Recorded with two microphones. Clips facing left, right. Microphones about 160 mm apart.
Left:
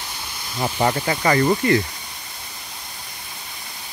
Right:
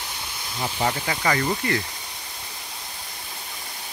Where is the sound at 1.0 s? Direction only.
40° left (ahead or behind).